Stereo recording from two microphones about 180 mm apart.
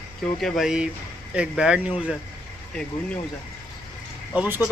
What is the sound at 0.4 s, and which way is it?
Speech, centre (ahead or behind).